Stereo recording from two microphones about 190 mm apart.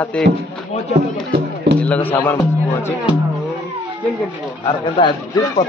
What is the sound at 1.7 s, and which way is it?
Speech, 5° left (ahead or behind).